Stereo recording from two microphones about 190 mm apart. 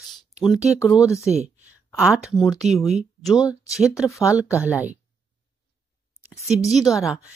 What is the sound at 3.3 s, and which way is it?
Speech, 15° left (ahead or behind).